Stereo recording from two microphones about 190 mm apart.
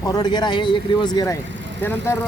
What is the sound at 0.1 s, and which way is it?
Speech, 20° left (ahead or behind).